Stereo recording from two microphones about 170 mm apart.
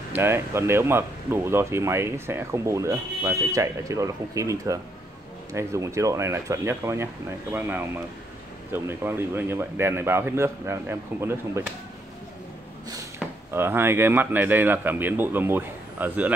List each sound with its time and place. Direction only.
0.1 s speech: 15° right (ahead or behind)
13.5 s speech: 15° right (ahead or behind)